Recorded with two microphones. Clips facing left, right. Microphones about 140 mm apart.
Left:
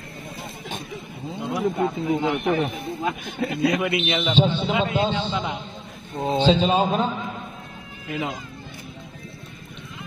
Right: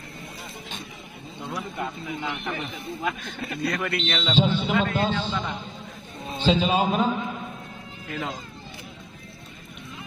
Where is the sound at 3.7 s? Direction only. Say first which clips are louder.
Left 5 dB; 10° left (ahead or behind).